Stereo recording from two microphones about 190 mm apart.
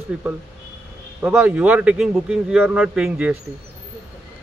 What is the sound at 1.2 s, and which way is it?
A man's voice, 5° right (ahead or behind).